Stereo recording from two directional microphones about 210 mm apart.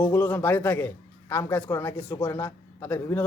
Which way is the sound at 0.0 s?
10° left (ahead or behind).